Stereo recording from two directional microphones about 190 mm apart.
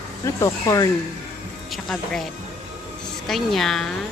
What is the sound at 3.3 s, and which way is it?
Speech, centre (ahead or behind).